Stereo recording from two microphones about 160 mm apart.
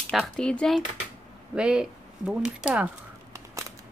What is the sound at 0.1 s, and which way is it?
Speech, 5° left (ahead or behind).